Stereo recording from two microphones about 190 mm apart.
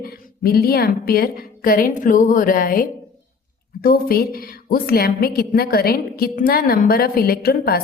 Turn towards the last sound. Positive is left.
turn(degrees=55)  # may be behind; listen again after turning